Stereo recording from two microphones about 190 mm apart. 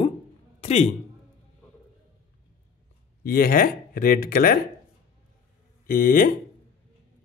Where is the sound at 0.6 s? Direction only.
35° left (ahead or behind).